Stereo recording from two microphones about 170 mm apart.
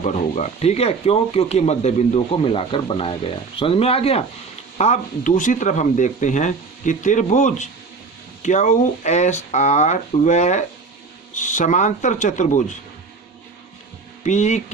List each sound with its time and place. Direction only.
0.0 s speech: 45° left (ahead or behind)
14.3 s speech: 45° left (ahead or behind)